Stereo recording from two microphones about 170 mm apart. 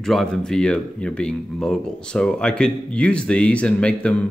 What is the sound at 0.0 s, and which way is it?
Speech, centre (ahead or behind).